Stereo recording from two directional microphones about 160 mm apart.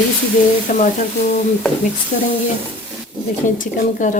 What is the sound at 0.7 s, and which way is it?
Speech, 55° left (ahead or behind).